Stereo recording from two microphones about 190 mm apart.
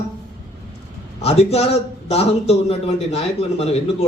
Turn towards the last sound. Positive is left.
turn(degrees=30)  # may be behind; listen again after turning